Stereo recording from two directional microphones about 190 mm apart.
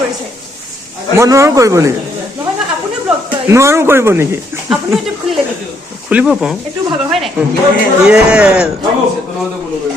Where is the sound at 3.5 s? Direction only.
15° right (ahead or behind).